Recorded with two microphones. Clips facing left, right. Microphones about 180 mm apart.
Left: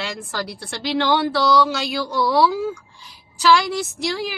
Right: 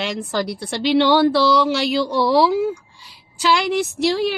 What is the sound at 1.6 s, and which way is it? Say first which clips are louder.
Speech: right 5 dB; 20° right (ahead or behind).